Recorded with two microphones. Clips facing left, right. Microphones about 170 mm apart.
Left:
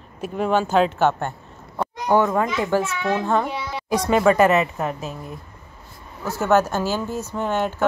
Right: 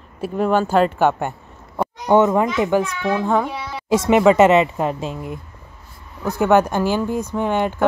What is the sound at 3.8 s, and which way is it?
Speech, 20° right (ahead or behind).